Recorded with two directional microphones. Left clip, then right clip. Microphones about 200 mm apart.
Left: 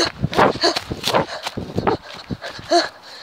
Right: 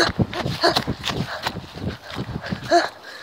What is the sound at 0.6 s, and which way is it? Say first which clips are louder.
Walk: even; 10° left (ahead or behind).